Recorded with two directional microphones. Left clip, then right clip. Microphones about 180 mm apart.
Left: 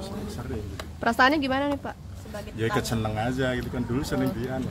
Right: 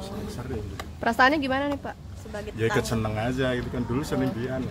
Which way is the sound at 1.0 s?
15° left (ahead or behind).